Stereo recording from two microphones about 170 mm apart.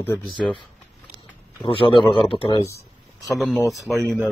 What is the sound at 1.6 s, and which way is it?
Speech, 30° left (ahead or behind).